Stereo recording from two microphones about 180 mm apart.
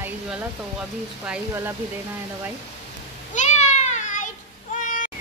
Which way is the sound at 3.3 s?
40° left (ahead or behind).